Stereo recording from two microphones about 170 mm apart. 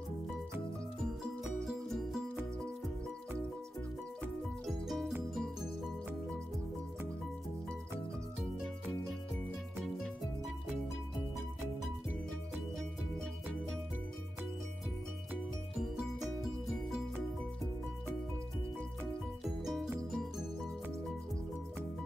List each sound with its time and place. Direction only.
1.4 s music: centre (ahead or behind)
4.6 s music: centre (ahead or behind)
19.6 s music: centre (ahead or behind)